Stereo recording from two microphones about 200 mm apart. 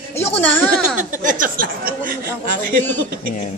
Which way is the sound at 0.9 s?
40° right (ahead or behind).